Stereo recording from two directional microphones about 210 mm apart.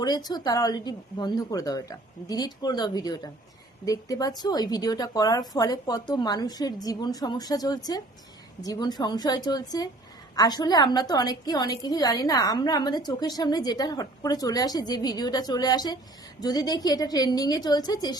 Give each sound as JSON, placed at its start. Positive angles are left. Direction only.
{"t": 0.0, "sound": "a woman's voice", "side_deg": 20}